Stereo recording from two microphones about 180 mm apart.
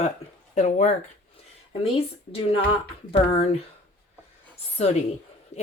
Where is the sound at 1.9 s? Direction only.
30° left (ahead or behind).